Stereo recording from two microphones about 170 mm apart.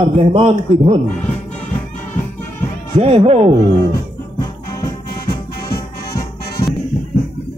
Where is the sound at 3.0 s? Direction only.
35° right (ahead or behind).